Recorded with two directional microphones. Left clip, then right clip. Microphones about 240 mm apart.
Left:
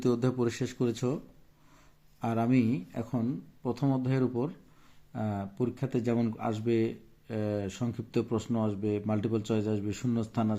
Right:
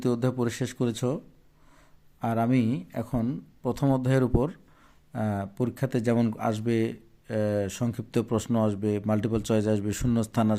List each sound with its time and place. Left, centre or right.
0.0 s speech: centre
2.2 s speech: centre